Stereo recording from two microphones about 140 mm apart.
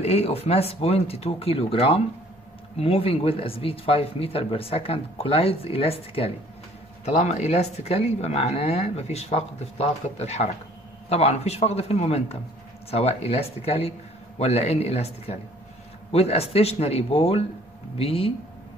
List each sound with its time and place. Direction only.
0.0 s speech: 45° left (ahead or behind)
7.1 s speech: 55° left (ahead or behind)